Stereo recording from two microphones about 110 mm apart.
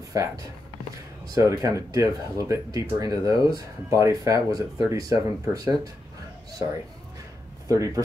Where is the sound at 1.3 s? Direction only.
30° right (ahead or behind).